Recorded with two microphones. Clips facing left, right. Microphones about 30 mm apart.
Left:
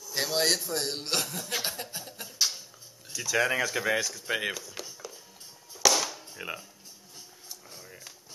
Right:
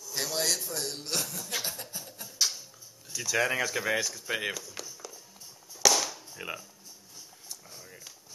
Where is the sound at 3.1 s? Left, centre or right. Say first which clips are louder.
Left 1 dB; centre.